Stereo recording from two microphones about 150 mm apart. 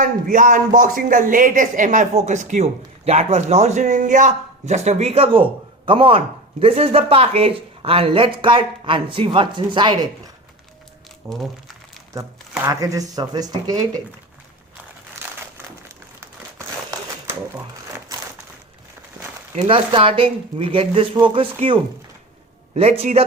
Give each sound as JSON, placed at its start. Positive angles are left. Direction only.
{"t": 0.0, "sound": "speech", "side_deg": -60}
{"t": 11.2, "sound": "speech", "side_deg": -20}
{"t": 12.6, "sound": "speech", "side_deg": -20}
{"t": 19.6, "sound": "speech", "side_deg": -40}